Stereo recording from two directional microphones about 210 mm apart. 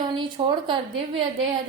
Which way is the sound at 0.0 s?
20° right (ahead or behind).